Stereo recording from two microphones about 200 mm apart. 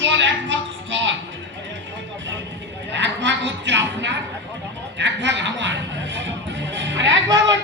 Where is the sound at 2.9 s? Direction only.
60° right (ahead or behind).